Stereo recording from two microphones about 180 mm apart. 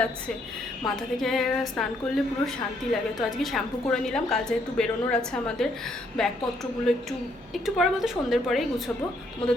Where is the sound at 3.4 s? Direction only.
Centre (ahead or behind).